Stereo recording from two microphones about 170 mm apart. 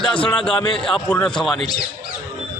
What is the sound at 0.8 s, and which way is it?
Speech, 5° left (ahead or behind).